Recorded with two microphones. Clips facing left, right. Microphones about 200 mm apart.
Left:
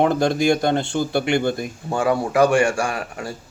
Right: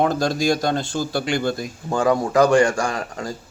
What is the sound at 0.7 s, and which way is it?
Speech, 65° left (ahead or behind).